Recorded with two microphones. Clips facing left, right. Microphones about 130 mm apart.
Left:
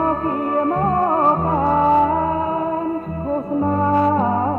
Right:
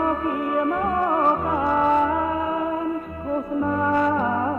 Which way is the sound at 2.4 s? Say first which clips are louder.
Left 3 dB; 30° left (ahead or behind).